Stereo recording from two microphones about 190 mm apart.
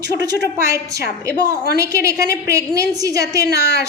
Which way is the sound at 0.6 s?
15° right (ahead or behind).